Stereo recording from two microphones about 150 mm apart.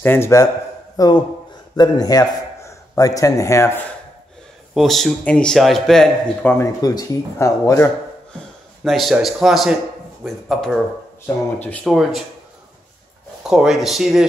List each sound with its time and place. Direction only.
0.0 s a man's voice: 15° left (ahead or behind)
4.7 s a man's voice: centre (ahead or behind)
6.6 s speech: 25° left (ahead or behind)
8.8 s a man's voice: centre (ahead or behind)
11.8 s a man's voice: centre (ahead or behind)
13.4 s a man's voice: 5° right (ahead or behind)